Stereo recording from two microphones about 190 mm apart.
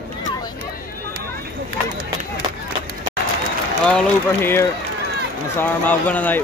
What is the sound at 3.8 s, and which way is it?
Speech, 10° left (ahead or behind).